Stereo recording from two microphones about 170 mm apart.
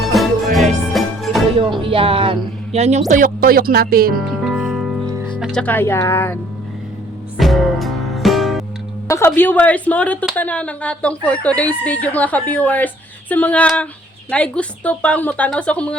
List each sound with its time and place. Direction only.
0.0 s music: centre (ahead or behind)
1.5 s speech: 30° right (ahead or behind)
3.1 s speech: 55° right (ahead or behind)
4.2 s music: centre (ahead or behind)
5.3 s speech: 5° left (ahead or behind)
7.3 s music: centre (ahead or behind)
9.0 s speech: 15° left (ahead or behind)